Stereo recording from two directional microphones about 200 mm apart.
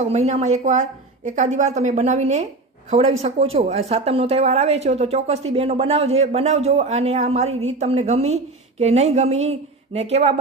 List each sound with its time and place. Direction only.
0.0 s a woman's voice: 35° right (ahead or behind)